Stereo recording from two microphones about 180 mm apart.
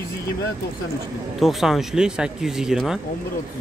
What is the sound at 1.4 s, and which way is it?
Speech, centre (ahead or behind).